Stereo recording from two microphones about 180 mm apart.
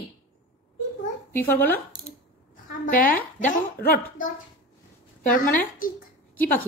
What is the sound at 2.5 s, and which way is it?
Speech, 50° left (ahead or behind).